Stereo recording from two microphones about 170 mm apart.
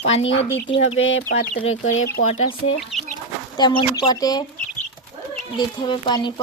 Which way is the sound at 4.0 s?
20° left (ahead or behind).